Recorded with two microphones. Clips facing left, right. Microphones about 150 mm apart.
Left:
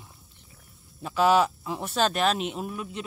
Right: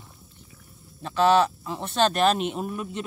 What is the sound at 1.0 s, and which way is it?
Speech, 10° left (ahead or behind).